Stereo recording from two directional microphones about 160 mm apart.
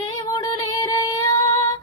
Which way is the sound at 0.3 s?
25° left (ahead or behind).